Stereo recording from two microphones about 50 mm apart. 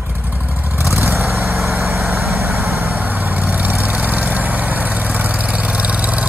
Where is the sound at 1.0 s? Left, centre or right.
Right.